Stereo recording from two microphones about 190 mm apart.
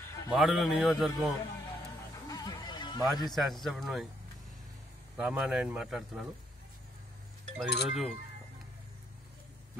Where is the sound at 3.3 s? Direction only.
Centre (ahead or behind).